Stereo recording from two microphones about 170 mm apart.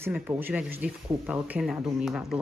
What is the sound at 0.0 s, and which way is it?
Speech, 15° right (ahead or behind).